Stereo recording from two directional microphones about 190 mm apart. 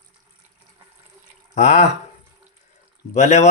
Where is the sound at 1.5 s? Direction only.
40° left (ahead or behind).